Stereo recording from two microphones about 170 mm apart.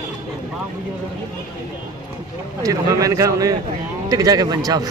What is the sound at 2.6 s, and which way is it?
A man's voice, 20° right (ahead or behind).